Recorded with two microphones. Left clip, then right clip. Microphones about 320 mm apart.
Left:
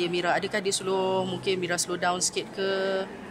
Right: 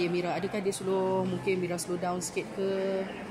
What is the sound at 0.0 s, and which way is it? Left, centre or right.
Speech, left.